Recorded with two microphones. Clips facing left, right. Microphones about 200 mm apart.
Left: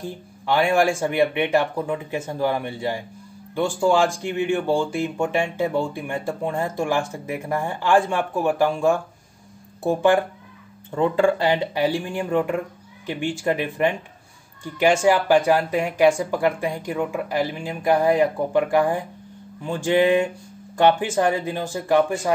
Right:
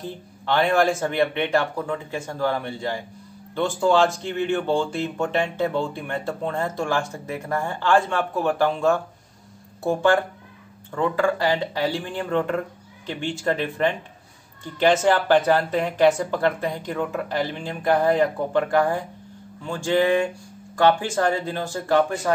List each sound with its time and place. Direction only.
0.5 s speech: 10° left (ahead or behind)